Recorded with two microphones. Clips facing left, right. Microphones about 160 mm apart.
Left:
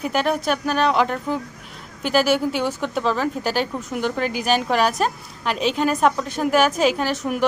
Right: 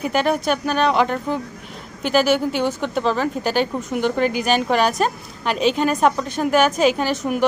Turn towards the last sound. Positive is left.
turn(degrees=0)  # may be behind; listen again after turning